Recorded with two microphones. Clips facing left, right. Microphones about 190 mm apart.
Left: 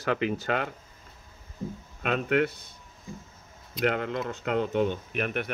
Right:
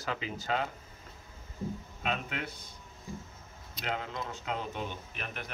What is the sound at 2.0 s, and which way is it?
Speech, 65° left (ahead or behind).